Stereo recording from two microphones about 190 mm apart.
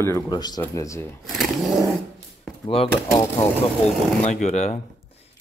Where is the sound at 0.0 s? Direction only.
20° left (ahead or behind).